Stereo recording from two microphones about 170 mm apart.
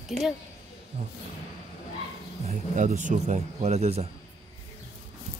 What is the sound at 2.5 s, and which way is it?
Speech, 45° right (ahead or behind).